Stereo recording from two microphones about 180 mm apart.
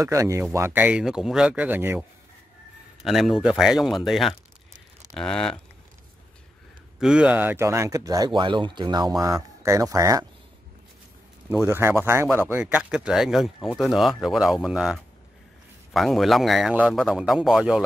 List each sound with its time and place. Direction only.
0.0 s a man's voice: 20° right (ahead or behind); by 5.6 s 5° left (ahead or behind)
7.0 s speech: 5° right (ahead or behind)
11.4 s a man's voice: 15° right (ahead or behind)